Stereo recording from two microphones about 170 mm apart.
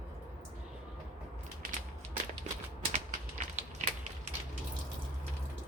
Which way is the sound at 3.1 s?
45° right (ahead or behind).